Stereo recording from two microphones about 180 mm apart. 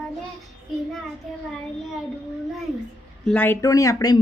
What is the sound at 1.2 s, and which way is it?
Speech, centre (ahead or behind).